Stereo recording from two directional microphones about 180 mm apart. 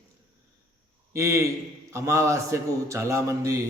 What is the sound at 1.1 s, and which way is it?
A man's voice, 15° right (ahead or behind).